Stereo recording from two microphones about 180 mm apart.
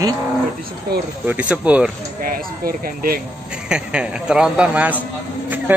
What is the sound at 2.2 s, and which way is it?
Speech, 50° right (ahead or behind).